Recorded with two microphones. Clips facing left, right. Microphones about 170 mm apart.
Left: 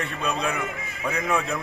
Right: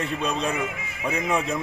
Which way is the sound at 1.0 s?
15° right (ahead or behind).